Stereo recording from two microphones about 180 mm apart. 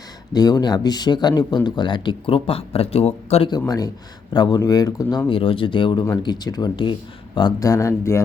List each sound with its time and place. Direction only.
0.3 s speech: 20° left (ahead or behind)
3.7 s speech: 20° left (ahead or behind)
5.3 s speech: 30° left (ahead or behind)